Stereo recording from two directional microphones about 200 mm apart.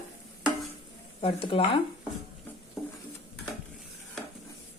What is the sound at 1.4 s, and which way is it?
Speech, 25° left (ahead or behind).